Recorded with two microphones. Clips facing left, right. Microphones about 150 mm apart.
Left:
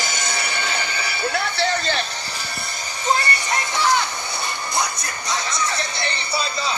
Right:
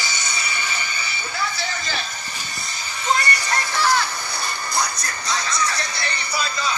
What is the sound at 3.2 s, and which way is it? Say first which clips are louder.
Music: even; 20° left (ahead or behind).